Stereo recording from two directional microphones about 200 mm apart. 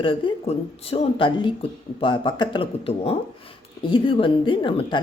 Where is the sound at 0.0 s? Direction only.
25° left (ahead or behind).